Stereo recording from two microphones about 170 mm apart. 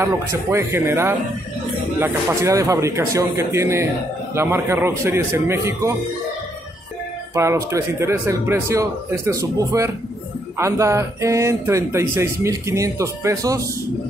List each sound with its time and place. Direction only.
0.0 s speech: 15° right (ahead or behind)
7.3 s speech: 15° right (ahead or behind)